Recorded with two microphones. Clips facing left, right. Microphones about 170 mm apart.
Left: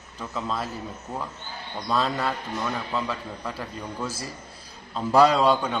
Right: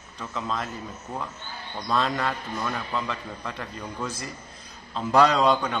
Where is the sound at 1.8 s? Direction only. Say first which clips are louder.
Even; 5° left (ahead or behind).